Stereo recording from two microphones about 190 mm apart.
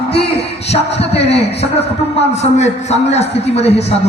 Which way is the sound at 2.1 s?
65° left (ahead or behind).